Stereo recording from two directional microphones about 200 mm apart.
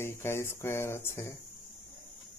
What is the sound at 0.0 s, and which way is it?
Speech, 10° left (ahead or behind).